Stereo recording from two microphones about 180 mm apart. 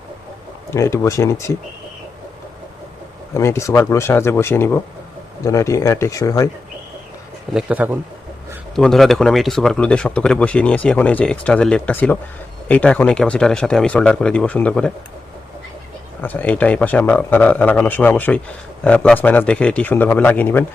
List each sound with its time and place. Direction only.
0.7 s speech: 15° left (ahead or behind)
3.3 s speech: 15° left (ahead or behind)
7.5 s speech: 10° right (ahead or behind)
16.2 s speech: 10° left (ahead or behind)